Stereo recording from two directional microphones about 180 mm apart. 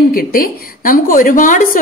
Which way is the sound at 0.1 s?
55° left (ahead or behind).